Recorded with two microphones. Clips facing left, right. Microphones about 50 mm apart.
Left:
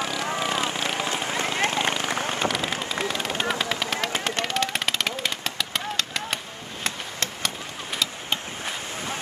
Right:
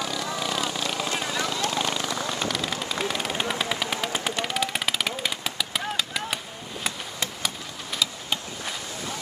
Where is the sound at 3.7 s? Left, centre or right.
Centre.